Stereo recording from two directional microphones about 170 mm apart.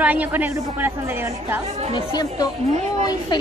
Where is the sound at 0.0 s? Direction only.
10° right (ahead or behind).